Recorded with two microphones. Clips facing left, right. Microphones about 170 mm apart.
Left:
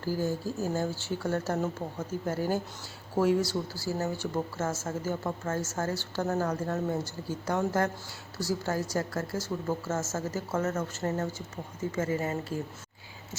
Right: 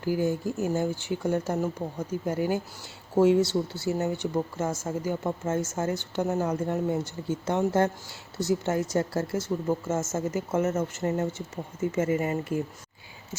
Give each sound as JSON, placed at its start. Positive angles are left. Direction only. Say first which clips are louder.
{"t": 0.0, "sound": "speech", "louder": "right 4 dB", "side_deg": -15}
{"t": 3.2, "sound": "a woman's voice", "louder": "right 5 dB", "side_deg": -25}